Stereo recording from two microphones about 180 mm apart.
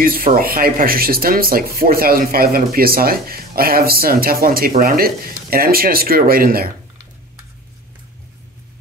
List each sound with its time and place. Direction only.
0.0 s speech: 50° right (ahead or behind)